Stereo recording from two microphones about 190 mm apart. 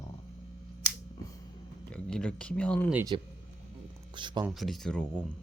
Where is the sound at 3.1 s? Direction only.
25° right (ahead or behind).